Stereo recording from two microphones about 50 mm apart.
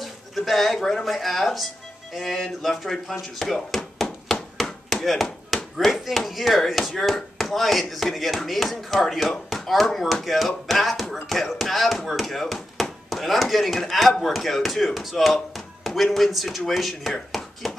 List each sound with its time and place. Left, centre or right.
0.0 s speech: centre
5.0 s chop: centre
5.8 s speech: centre